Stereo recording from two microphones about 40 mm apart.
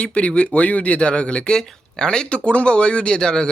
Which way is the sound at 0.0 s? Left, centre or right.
Left.